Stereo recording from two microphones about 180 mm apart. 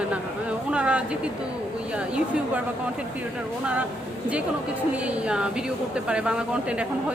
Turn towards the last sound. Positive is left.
turn(degrees=-5)  # may be behind; listen again after turning